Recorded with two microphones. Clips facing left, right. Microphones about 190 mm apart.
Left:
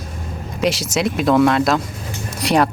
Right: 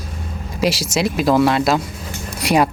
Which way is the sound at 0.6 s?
Centre (ahead or behind).